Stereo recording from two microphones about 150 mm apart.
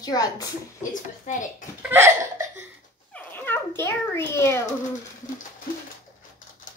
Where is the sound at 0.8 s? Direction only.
60° left (ahead or behind).